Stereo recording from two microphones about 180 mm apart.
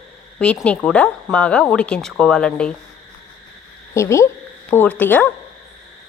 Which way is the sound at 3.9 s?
15° left (ahead or behind).